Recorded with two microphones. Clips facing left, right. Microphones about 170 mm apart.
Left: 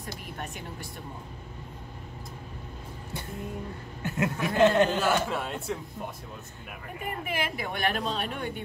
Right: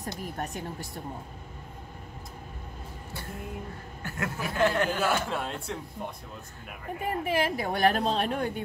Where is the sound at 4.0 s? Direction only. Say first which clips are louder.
Left 5 dB; 20° left (ahead or behind).